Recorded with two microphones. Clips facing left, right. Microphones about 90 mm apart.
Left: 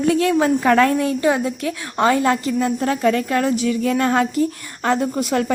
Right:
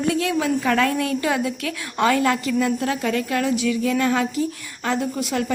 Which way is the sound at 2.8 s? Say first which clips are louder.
Left 5 dB; 45° left (ahead or behind).